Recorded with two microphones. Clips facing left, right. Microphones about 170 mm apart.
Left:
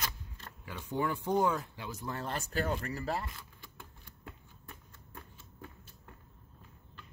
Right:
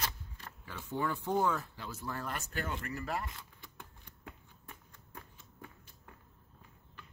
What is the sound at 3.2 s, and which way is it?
Shuffling cards, 20° right (ahead or behind).